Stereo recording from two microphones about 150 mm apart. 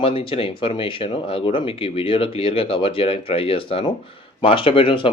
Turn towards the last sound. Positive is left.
turn(degrees=35)  # may be behind; listen again after turning